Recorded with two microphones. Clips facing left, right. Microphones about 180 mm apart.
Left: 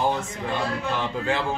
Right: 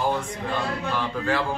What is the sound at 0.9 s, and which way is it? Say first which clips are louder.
Speech: right 2 dB; 20° left (ahead or behind).